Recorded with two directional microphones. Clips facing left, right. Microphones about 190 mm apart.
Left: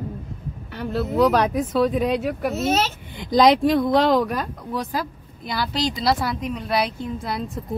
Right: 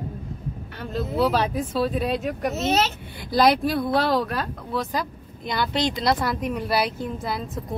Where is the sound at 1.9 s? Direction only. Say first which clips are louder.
Left 3 dB; 15° left (ahead or behind).